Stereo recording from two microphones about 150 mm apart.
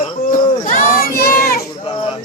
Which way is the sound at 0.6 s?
70° left (ahead or behind).